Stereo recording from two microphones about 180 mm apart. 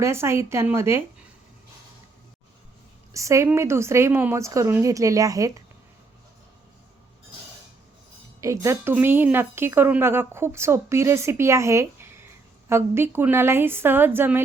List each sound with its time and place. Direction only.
0.0 s speech: 15° right (ahead or behind)
3.1 s speech: 15° right (ahead or behind)
8.4 s speech: 15° right (ahead or behind)